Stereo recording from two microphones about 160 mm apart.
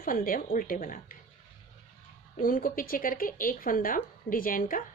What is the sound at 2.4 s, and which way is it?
Speech, 60° left (ahead or behind).